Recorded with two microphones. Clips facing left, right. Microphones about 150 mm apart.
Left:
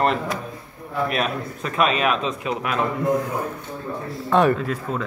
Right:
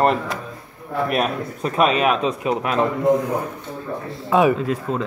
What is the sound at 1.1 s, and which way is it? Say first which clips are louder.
A man's voice: right 3 dB; 40° right (ahead or behind).